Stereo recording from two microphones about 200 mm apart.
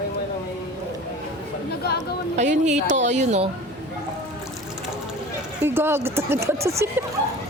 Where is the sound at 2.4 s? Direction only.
35° right (ahead or behind).